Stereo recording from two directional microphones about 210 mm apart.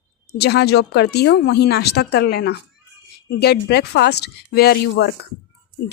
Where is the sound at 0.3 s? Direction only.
50° left (ahead or behind).